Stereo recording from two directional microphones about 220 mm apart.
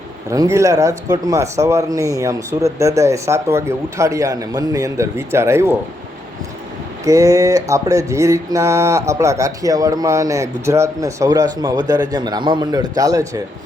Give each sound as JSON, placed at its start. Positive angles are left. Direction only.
{"t": 0.3, "sound": "mantra", "side_deg": -15}
{"t": 7.0, "sound": "mantra", "side_deg": -15}